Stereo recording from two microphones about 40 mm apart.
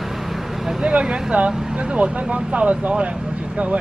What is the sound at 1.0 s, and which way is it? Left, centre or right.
Speech, right.